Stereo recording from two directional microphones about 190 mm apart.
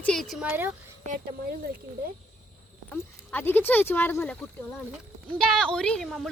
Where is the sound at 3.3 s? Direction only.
10° left (ahead or behind).